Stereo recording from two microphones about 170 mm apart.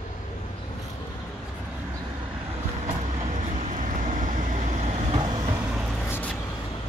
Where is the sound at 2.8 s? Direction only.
40° right (ahead or behind).